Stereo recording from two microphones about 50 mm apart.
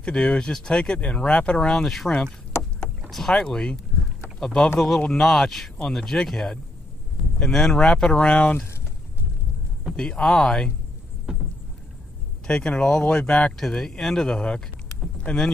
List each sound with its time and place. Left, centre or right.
0.0 s speech: left
3.1 s speech: centre
3.3 s speech: centre
9.9 s speech: centre
11.3 s a sound: centre
12.4 s speech: centre
13.6 s speech: centre